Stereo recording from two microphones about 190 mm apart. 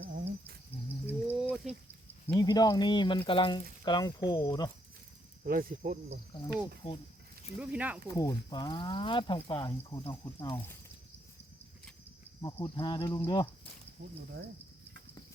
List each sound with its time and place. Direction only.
1.0 s cricket: 10° right (ahead or behind)
2.3 s speech: 20° left (ahead or behind)
5.4 s speech: 50° right (ahead or behind)
6.8 s speech: 30° left (ahead or behind)
7.6 s speech: 5° right (ahead or behind)
8.0 s speech: 20° left (ahead or behind)
10.6 s a sound: 10° left (ahead or behind)
12.4 s speech: 20° left (ahead or behind)
14.0 s speech: 65° right (ahead or behind)